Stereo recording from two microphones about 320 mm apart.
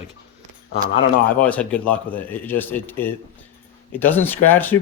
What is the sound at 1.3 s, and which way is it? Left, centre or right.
Speech, centre.